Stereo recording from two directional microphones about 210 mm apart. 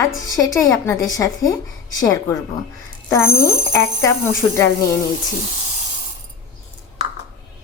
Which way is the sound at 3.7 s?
10° left (ahead or behind).